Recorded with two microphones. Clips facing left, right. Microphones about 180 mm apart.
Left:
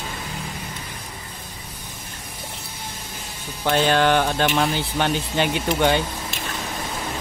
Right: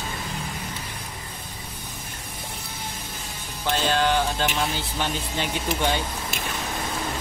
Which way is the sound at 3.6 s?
65° left (ahead or behind).